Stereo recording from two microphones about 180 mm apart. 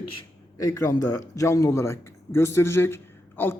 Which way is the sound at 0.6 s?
15° left (ahead or behind).